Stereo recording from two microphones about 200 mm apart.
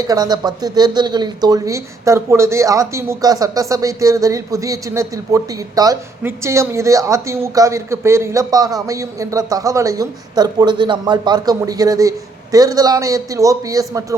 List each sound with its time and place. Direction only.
0.0 s speech: 20° right (ahead or behind)